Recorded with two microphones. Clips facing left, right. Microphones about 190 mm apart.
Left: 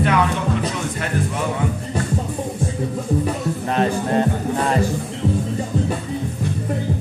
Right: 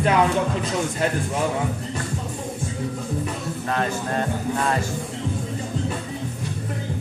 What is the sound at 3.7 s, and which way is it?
Speech, 25° left (ahead or behind).